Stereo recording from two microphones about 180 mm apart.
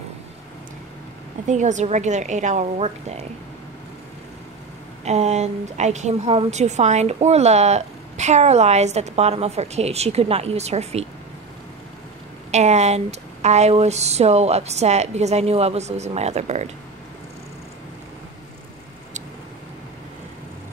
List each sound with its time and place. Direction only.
1.5 s a woman's voice: 40° right (ahead or behind)
5.0 s a woman's voice: 40° right (ahead or behind)
12.4 s a woman's voice: 40° right (ahead or behind)